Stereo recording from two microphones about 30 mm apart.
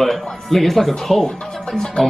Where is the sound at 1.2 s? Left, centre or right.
Centre.